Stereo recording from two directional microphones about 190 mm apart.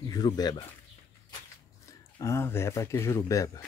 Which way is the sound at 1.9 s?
15° left (ahead or behind).